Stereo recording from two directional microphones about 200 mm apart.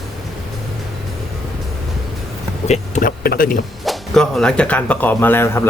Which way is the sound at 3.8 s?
Centre (ahead or behind).